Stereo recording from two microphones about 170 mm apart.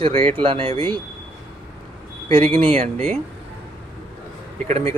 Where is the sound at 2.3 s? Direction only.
35° right (ahead or behind).